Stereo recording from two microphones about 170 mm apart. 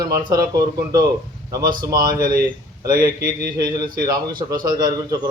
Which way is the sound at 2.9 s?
60° right (ahead or behind).